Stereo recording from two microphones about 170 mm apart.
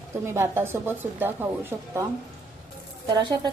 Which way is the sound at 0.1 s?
15° right (ahead or behind).